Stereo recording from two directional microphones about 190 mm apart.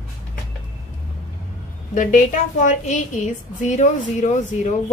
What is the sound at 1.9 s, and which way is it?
Speech, 45° left (ahead or behind).